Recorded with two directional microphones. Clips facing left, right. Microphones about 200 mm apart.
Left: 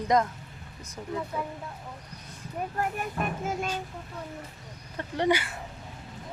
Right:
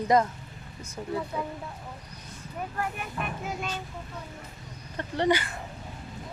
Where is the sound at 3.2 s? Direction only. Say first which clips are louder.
Left 3 dB; 40° left (ahead or behind).